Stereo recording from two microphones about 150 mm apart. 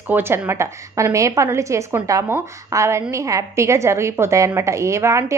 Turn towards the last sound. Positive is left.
turn(degrees=-20)  # may be behind; listen again after turning